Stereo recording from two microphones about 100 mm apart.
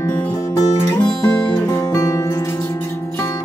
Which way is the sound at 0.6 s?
45° left (ahead or behind).